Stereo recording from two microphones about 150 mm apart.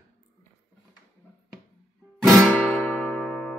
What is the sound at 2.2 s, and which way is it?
Music, centre (ahead or behind).